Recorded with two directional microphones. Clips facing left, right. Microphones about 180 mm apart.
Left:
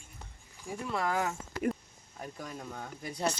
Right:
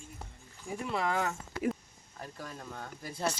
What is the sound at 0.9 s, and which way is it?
Speech, centre (ahead or behind).